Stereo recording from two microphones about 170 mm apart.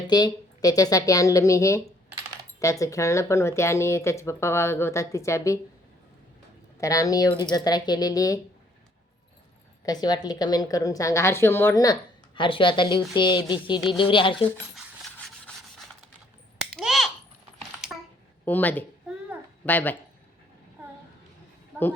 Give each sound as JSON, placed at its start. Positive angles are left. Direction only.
{"t": 0.1, "sound": "a woman's voice", "side_deg": 20}
{"t": 6.7, "sound": "a woman's voice", "side_deg": 20}
{"t": 9.8, "sound": "a woman's voice", "side_deg": 25}
{"t": 14.8, "sound": "rub", "side_deg": 0}
{"t": 16.7, "sound": "a sound", "side_deg": 0}
{"t": 18.4, "sound": "speech", "side_deg": 10}